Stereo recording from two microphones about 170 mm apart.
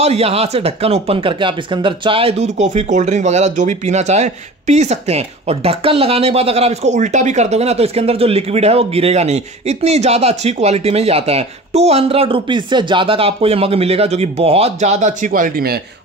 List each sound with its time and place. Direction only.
0.0 s speech: 35° right (ahead or behind); by 15.8 s 60° right (ahead or behind)